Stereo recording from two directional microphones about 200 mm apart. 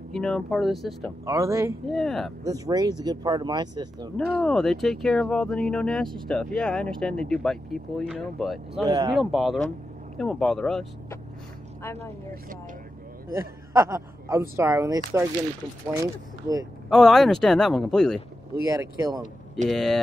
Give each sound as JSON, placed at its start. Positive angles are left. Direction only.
{"t": 0.1, "sound": "speech", "side_deg": 0}
{"t": 1.2, "sound": "speech", "side_deg": -15}
{"t": 1.9, "sound": "speech", "side_deg": 0}
{"t": 2.4, "sound": "speech", "side_deg": -15}
{"t": 4.2, "sound": "speech", "side_deg": 5}
{"t": 8.8, "sound": "speech", "side_deg": -25}
{"t": 9.1, "sound": "speech", "side_deg": 0}
{"t": 11.8, "sound": "a woman's voice", "side_deg": 10}
{"t": 13.3, "sound": "a man's voice", "side_deg": -15}
{"t": 16.9, "sound": "speech", "side_deg": 0}
{"t": 18.7, "sound": "speech", "side_deg": -20}
{"t": 19.7, "sound": "speech", "side_deg": 0}